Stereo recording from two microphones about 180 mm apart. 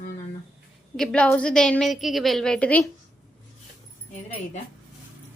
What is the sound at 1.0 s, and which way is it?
A woman's voice, 5° left (ahead or behind).